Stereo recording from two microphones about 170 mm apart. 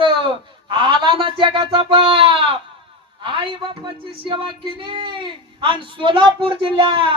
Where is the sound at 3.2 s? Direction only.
30° right (ahead or behind).